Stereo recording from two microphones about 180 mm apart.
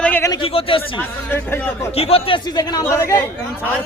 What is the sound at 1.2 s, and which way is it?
Speech, 10° left (ahead or behind).